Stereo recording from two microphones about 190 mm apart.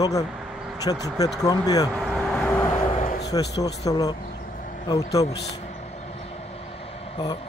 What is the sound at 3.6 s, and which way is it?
Speech, 20° left (ahead or behind).